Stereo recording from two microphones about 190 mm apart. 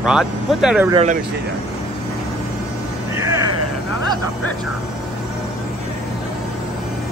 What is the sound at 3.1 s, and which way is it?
Music, 15° right (ahead or behind).